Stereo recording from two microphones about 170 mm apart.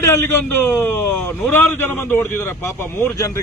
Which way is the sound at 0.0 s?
15° left (ahead or behind).